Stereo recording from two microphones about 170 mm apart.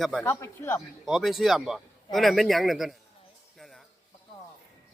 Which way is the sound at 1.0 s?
Centre (ahead or behind).